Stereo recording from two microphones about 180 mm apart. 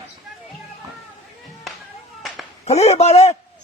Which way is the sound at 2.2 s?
Centre (ahead or behind).